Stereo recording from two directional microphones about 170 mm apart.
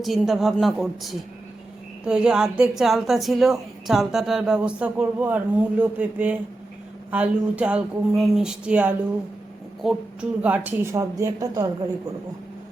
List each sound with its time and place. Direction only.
0.0 s a woman's voice: centre (ahead or behind); by 11.9 s 20° right (ahead or behind)